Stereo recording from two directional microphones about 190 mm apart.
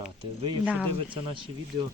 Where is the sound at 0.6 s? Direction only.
5° right (ahead or behind).